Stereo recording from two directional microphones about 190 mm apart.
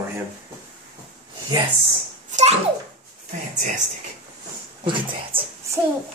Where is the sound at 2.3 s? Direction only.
40° right (ahead or behind).